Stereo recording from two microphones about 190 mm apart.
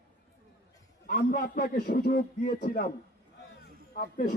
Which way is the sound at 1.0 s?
50° left (ahead or behind).